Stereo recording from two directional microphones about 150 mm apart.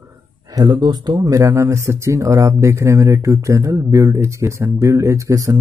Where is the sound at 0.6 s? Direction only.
25° right (ahead or behind).